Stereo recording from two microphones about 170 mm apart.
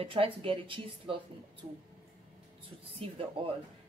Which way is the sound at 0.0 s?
35° right (ahead or behind).